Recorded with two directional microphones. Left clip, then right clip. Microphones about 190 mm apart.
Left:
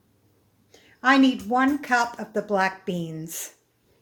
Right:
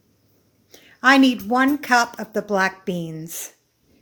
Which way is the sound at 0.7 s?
35° right (ahead or behind).